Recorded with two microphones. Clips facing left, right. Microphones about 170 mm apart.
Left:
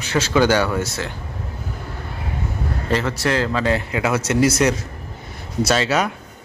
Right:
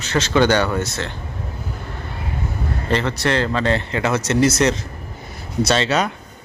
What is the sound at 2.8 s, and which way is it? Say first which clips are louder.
Speech: right 1 dB; 5° left (ahead or behind).